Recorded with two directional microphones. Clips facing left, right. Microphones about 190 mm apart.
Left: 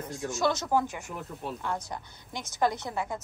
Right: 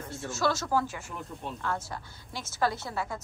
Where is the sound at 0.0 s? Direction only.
15° left (ahead or behind).